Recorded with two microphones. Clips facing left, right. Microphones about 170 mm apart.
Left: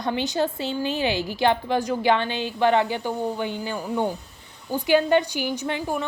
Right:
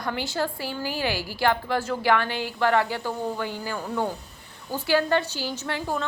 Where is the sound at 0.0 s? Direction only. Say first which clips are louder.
Left 4 dB; 20° left (ahead or behind).